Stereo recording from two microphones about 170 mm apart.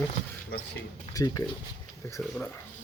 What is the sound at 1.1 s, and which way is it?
Speech, 20° left (ahead or behind).